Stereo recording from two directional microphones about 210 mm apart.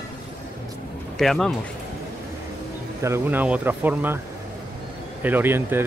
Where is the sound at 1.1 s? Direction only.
Centre (ahead or behind).